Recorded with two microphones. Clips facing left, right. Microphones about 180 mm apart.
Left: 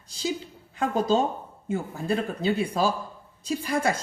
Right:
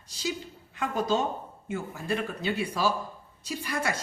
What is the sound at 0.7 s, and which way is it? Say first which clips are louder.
Speech: left 4 dB; 30° left (ahead or behind).